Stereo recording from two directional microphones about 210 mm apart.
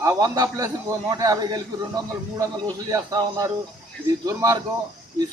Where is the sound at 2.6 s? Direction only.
15° right (ahead or behind).